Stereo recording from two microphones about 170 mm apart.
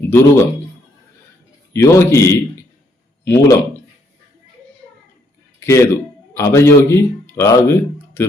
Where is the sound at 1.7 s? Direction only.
15° left (ahead or behind).